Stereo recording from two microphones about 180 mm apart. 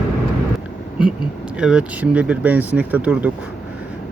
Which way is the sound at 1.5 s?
5° right (ahead or behind).